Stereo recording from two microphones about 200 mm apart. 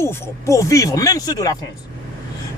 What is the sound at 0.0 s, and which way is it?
A man's voice, 10° left (ahead or behind).